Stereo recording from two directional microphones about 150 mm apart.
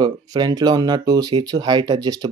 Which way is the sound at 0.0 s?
25° right (ahead or behind).